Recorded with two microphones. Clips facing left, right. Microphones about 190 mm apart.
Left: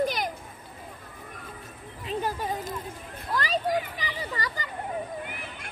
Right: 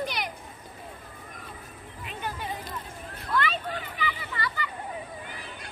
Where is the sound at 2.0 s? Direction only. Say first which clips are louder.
Left 6 dB; 40° left (ahead or behind).